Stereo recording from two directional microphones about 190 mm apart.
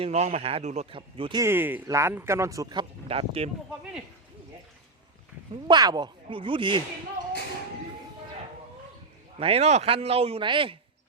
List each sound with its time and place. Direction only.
0.0 s speech: 35° right (ahead or behind)
1.4 s speech: 10° right (ahead or behind); by 3.5 s 30° right (ahead or behind)
5.6 s speech: 20° right (ahead or behind)
9.4 s speech: 30° right (ahead or behind)